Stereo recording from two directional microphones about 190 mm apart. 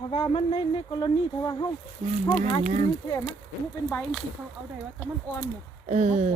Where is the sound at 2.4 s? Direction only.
40° right (ahead or behind).